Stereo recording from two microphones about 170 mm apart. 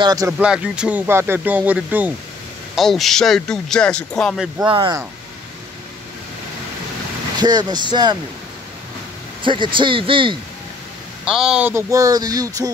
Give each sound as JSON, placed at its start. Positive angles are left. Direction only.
{"t": 0.0, "sound": "speech", "side_deg": -20}
{"t": 0.4, "sound": "speech", "side_deg": -5}
{"t": 2.7, "sound": "speech", "side_deg": 0}
{"t": 4.6, "sound": "speech", "side_deg": -30}
{"t": 7.3, "sound": "speech", "side_deg": -25}
{"t": 9.4, "sound": "speech", "side_deg": -30}
{"t": 11.2, "sound": "speech", "side_deg": -5}